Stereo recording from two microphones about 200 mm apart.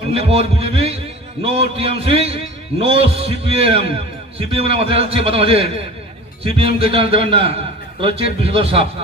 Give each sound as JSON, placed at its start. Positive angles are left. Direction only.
{"t": 0.1, "sound": "a man's voice", "side_deg": -30}